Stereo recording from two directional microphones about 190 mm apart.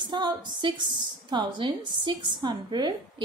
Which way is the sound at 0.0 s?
25° right (ahead or behind).